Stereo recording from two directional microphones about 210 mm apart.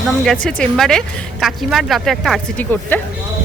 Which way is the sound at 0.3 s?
5° left (ahead or behind).